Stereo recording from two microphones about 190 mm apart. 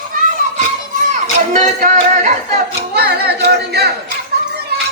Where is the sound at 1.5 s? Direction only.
40° right (ahead or behind).